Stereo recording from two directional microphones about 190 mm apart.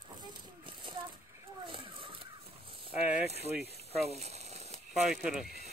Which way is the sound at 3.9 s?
35° right (ahead or behind).